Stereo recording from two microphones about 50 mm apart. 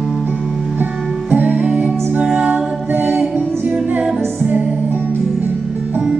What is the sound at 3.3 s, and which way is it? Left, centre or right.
Singing, right.